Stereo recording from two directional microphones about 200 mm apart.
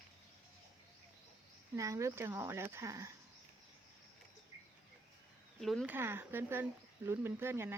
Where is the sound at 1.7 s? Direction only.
15° right (ahead or behind).